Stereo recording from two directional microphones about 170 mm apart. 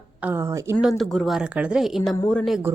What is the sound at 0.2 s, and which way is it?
Speech, 10° right (ahead or behind).